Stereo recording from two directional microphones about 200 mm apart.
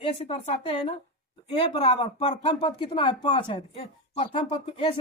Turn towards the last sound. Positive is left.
turn(degrees=30)  # may be behind; listen again after turning